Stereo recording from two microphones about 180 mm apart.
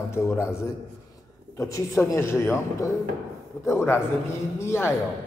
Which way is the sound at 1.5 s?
15° left (ahead or behind).